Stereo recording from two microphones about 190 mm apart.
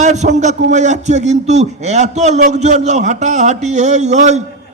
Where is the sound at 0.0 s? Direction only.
40° right (ahead or behind).